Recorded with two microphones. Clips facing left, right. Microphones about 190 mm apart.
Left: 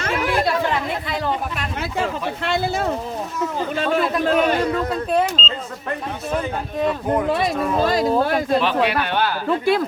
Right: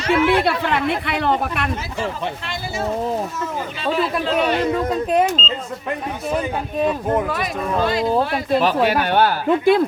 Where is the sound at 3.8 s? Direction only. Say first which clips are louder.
Left 1 dB; 50° left (ahead or behind).